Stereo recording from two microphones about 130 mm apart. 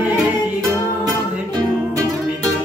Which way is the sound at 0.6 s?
25° right (ahead or behind).